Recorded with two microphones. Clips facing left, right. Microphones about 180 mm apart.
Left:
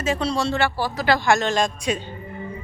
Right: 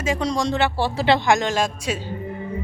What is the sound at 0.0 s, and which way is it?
Speech, 15° right (ahead or behind).